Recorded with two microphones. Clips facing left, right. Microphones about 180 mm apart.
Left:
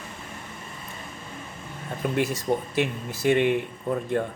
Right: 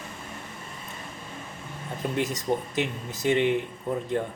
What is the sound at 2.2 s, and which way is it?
Speech, 20° right (ahead or behind).